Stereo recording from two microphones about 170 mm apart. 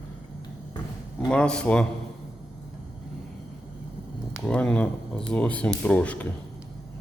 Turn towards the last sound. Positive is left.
turn(degrees=10)  # may be behind; listen again after turning